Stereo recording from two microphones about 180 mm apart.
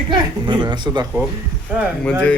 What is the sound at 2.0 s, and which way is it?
Speech, 5° left (ahead or behind).